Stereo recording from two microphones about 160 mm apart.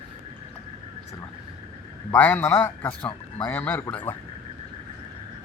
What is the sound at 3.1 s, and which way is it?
Speech, 30° left (ahead or behind).